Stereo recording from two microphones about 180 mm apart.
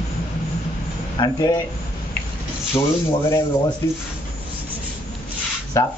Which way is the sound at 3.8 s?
15° left (ahead or behind).